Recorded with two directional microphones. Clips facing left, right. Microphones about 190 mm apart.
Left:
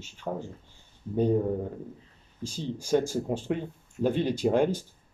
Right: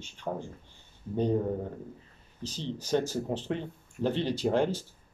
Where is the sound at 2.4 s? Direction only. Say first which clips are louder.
Left 2 dB; 10° left (ahead or behind).